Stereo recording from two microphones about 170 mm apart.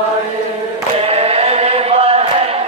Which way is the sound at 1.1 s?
35° right (ahead or behind).